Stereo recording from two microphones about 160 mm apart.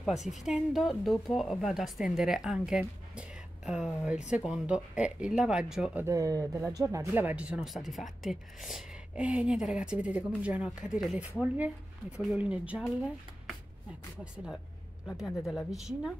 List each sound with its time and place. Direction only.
0.2 s speech: centre (ahead or behind)
6.0 s speech: 20° right (ahead or behind)
14.2 s speech: 5° right (ahead or behind)